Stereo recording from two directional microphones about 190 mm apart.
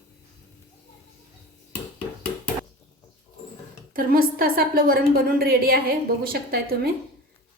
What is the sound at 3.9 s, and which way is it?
A woman's voice, 50° right (ahead or behind).